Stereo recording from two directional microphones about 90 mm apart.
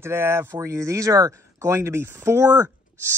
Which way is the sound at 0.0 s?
25° right (ahead or behind).